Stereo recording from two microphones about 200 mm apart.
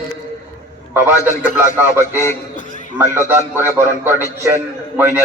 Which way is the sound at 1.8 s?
10° right (ahead or behind).